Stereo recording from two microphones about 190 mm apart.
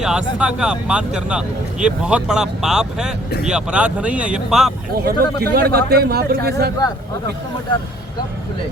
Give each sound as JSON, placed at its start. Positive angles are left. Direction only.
{"t": 0.0, "sound": "speech", "side_deg": -5}
{"t": 5.0, "sound": "speech", "side_deg": -55}